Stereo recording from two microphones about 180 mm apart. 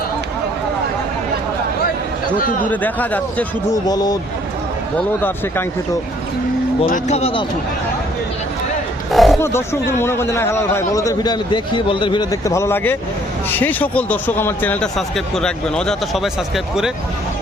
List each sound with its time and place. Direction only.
2.6 s speech: 10° left (ahead or behind)
3.8 s speech: 20° left (ahead or behind)
6.8 s speech: 40° left (ahead or behind)
9.1 s a sound: centre (ahead or behind)
9.4 s speech: 15° left (ahead or behind)